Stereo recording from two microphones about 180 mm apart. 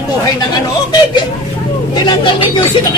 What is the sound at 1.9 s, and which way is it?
Music, 25° left (ahead or behind).